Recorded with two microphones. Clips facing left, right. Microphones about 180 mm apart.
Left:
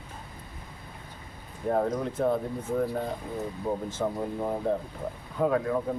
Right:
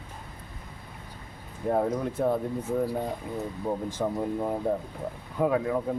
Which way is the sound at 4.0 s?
10° right (ahead or behind).